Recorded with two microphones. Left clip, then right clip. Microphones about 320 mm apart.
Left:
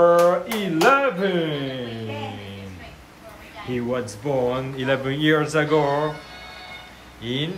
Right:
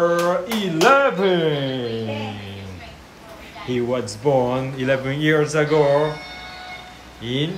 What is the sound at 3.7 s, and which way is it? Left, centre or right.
Speech, centre.